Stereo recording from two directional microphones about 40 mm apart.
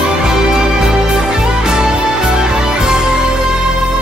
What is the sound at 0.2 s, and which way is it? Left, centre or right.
Music, centre.